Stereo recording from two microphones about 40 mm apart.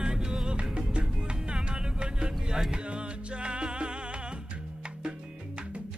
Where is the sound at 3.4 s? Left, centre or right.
Right.